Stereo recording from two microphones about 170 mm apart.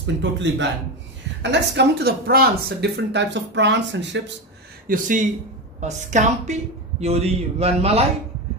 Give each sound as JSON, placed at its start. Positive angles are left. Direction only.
{"t": 0.0, "sound": "speech", "side_deg": -90}
{"t": 4.8, "sound": "a woman's voice", "side_deg": -55}